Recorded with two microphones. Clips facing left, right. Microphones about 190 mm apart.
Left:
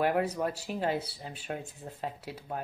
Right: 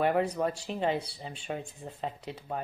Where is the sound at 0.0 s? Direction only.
5° left (ahead or behind).